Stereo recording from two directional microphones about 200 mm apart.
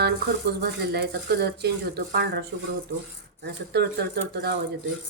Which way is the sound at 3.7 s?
55° right (ahead or behind).